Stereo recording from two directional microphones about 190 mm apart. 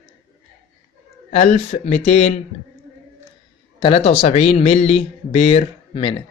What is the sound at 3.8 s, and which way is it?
A man's voice, 30° left (ahead or behind).